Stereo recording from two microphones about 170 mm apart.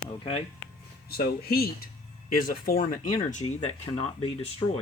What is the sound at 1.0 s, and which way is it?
Speech, 65° left (ahead or behind).